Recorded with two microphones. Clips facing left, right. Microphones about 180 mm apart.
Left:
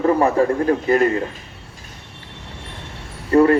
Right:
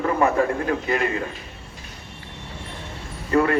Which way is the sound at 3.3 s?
30° left (ahead or behind).